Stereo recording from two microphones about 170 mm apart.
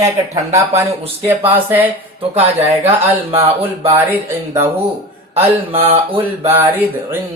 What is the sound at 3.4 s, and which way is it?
Speech, 35° right (ahead or behind).